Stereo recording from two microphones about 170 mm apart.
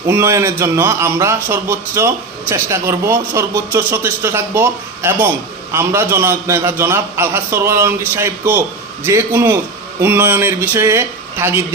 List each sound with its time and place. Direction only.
0.1 s a man's voice: 15° right (ahead or behind)